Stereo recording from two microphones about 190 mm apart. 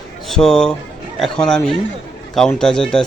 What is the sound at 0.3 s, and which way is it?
Speech, centre (ahead or behind).